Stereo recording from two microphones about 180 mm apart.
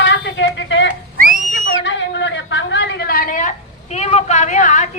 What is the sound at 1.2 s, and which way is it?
Whistle, 45° right (ahead or behind).